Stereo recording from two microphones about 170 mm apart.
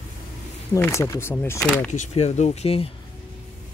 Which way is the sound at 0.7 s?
15° left (ahead or behind).